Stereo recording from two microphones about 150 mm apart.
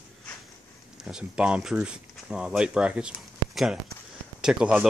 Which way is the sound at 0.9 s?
5° right (ahead or behind).